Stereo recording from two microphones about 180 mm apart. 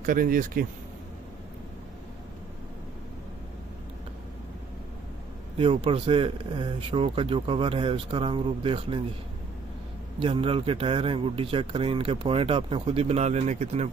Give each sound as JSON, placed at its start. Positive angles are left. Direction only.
{"t": 0.0, "sound": "speech", "side_deg": -50}
{"t": 5.6, "sound": "speech", "side_deg": -30}
{"t": 10.2, "sound": "speech", "side_deg": -30}